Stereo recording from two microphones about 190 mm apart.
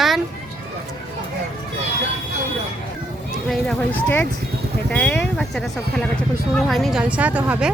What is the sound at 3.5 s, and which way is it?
Speech, 5° left (ahead or behind).